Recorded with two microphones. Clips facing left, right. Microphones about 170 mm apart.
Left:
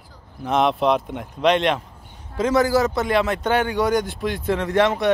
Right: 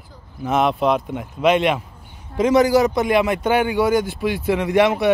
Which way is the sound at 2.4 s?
15° right (ahead or behind).